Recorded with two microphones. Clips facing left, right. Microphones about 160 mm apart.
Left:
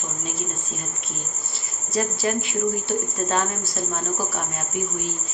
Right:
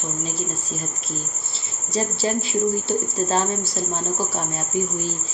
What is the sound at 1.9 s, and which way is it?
Speech, 30° right (ahead or behind).